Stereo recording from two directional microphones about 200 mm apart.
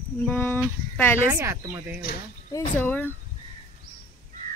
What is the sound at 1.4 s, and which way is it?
Speech, 15° right (ahead or behind).